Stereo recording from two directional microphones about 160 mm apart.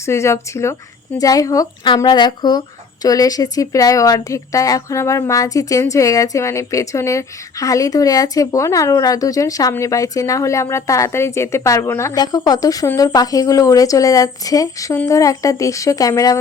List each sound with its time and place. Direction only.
0.0 s speech: 15° left (ahead or behind)